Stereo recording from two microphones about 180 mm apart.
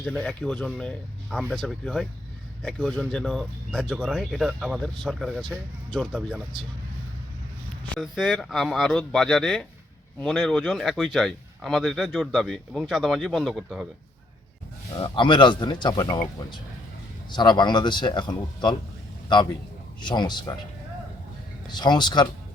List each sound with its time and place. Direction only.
0.0 s speech: 5° left (ahead or behind)
7.9 s speech: centre (ahead or behind)
14.9 s speech: 25° left (ahead or behind)
20.0 s speech: 25° left (ahead or behind)
21.8 s speech: 25° left (ahead or behind)